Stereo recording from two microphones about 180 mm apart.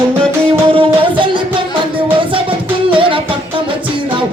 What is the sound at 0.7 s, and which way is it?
Music, 30° right (ahead or behind).